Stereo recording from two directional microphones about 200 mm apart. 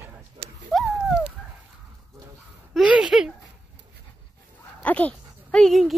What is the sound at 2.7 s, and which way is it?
Speech, 5° right (ahead or behind).